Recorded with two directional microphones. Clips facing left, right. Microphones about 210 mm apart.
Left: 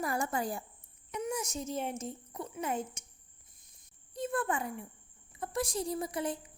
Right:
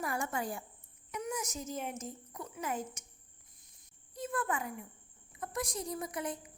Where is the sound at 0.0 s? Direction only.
35° left (ahead or behind).